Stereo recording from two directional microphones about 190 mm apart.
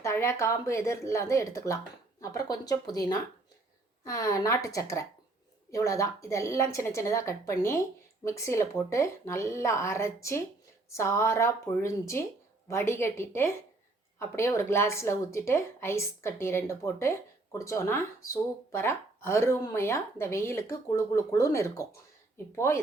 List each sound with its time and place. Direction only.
0.0 s speech: 15° left (ahead or behind)